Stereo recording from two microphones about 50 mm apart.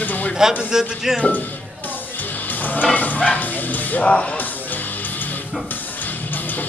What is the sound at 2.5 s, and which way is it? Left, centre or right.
Music, left.